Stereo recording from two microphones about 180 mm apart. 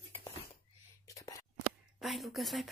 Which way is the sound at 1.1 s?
20° left (ahead or behind).